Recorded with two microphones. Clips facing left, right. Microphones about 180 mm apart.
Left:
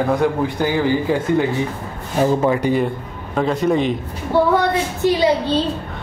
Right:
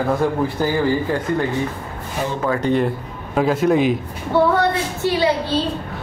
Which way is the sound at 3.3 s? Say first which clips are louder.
Right 1 dB; 5° right (ahead or behind).